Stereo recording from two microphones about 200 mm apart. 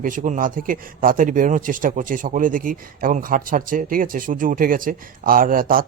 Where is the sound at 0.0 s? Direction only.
40° right (ahead or behind).